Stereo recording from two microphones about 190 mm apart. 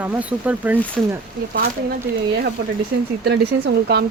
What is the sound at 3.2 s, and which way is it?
Speech, 60° right (ahead or behind).